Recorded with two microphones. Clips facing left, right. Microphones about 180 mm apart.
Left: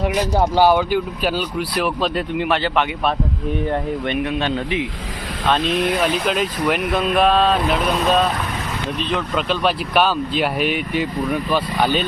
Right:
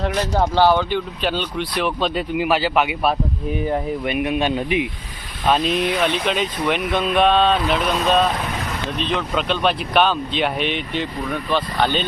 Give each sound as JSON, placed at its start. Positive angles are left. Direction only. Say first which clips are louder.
{"t": 0.0, "sound": "speech", "louder": "left 2 dB", "side_deg": 10}